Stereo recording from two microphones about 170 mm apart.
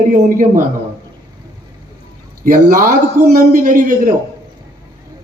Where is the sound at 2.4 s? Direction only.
55° right (ahead or behind).